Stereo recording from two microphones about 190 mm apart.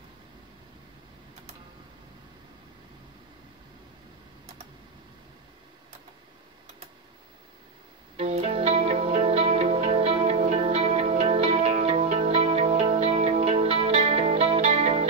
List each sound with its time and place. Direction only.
8.2 s music: 35° right (ahead or behind)